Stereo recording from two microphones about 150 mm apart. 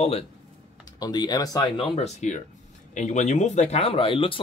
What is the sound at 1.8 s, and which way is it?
Speech, 45° left (ahead or behind).